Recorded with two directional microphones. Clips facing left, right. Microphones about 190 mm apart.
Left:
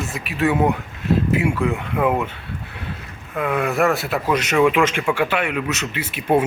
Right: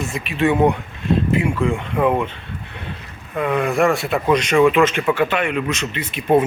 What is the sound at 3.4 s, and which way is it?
Speech, 5° left (ahead or behind).